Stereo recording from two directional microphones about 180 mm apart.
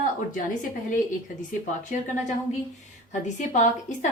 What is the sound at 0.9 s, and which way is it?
A woman's voice, 45° left (ahead or behind).